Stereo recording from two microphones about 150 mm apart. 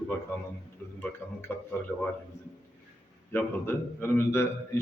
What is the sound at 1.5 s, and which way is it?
Speech, 15° left (ahead or behind).